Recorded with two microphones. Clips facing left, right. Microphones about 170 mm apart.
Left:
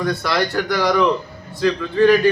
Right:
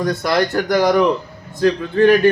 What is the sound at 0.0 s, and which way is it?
Speech, 45° right (ahead or behind).